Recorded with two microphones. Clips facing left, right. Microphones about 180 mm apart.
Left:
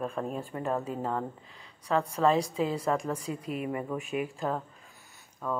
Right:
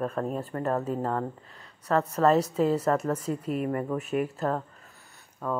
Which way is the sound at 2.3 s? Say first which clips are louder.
Right 4 dB; 10° left (ahead or behind).